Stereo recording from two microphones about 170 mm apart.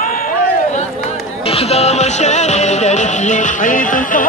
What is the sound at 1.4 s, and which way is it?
Music, 35° left (ahead or behind).